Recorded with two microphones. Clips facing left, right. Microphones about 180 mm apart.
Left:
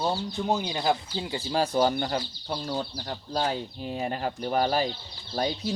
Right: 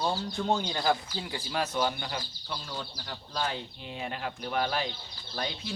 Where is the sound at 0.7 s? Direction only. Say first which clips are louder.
Left 2 dB; 20° left (ahead or behind); by 4.9 s 40° left (ahead or behind).